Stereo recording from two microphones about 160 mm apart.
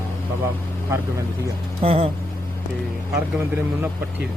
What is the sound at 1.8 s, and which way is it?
Speech, 35° right (ahead or behind).